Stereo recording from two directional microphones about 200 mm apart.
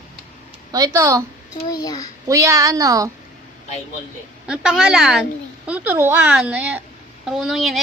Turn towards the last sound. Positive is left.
turn(degrees=0)  # may be behind; listen again after turning